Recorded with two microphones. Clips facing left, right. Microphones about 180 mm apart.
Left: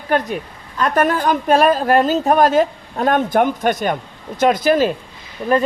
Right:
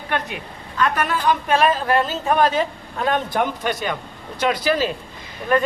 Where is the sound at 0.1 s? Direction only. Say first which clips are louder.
Left 7 dB; 40° left (ahead or behind).